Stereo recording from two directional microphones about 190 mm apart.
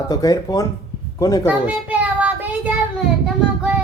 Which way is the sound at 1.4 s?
10° right (ahead or behind).